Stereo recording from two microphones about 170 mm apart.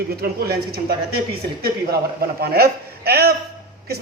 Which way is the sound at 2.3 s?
65° right (ahead or behind).